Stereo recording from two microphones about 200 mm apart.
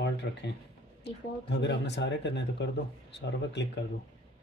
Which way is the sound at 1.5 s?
60° left (ahead or behind).